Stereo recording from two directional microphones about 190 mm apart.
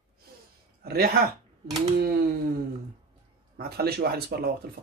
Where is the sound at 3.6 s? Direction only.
55° right (ahead or behind).